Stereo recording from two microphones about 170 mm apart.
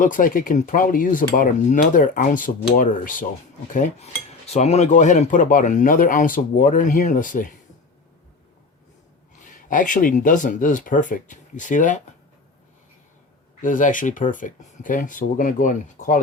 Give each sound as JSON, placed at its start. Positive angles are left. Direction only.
{"t": 0.0, "sound": "cutlery", "side_deg": 50}
{"t": 9.5, "sound": "cutlery", "side_deg": 50}
{"t": 13.6, "sound": "cutlery", "side_deg": 50}